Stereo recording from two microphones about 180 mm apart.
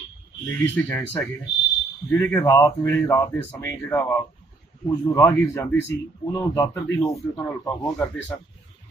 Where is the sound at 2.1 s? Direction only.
10° left (ahead or behind).